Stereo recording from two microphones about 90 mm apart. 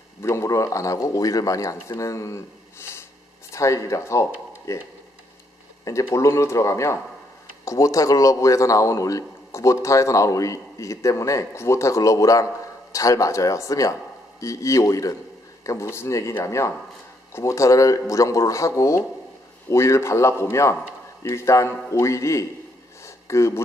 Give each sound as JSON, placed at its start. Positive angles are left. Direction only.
{"t": 0.2, "sound": "speech", "side_deg": 30}
{"t": 5.9, "sound": "speech", "side_deg": 35}
{"t": 23.0, "sound": "a sound", "side_deg": 35}